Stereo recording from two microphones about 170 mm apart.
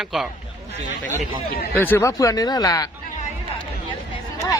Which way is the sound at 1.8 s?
15° left (ahead or behind).